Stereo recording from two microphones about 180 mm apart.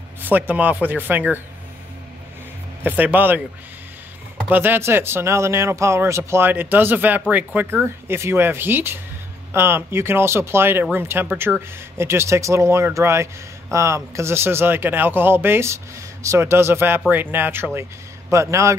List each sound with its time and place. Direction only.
0.2 s a man's voice: 10° right (ahead or behind)
2.8 s a man's voice: 10° right (ahead or behind)
4.5 s a man's voice: 10° right (ahead or behind)
12.0 s a man's voice: 15° right (ahead or behind)